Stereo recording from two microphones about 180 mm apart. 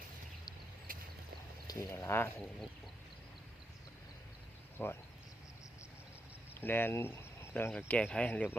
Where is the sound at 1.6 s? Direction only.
20° left (ahead or behind).